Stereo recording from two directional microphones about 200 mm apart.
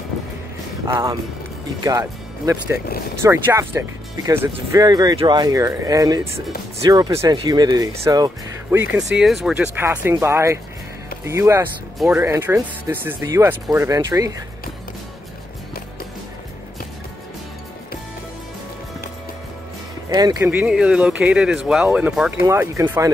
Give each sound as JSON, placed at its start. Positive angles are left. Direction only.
{"t": 0.8, "sound": "speech", "side_deg": -15}
{"t": 8.7, "sound": "speech", "side_deg": -5}
{"t": 20.1, "sound": "speech", "side_deg": -20}
{"t": 20.5, "sound": "speech", "side_deg": -5}